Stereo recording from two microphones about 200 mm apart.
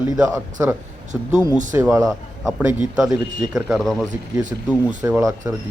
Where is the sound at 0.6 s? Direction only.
10° right (ahead or behind).